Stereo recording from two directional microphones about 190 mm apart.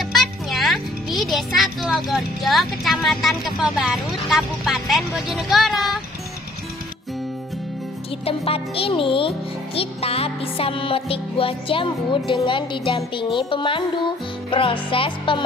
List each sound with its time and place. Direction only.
0.0 s a child's voice: centre (ahead or behind)
8.3 s music: 30° left (ahead or behind)